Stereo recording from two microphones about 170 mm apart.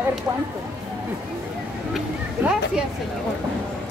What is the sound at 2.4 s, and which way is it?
Speech, 10° right (ahead or behind).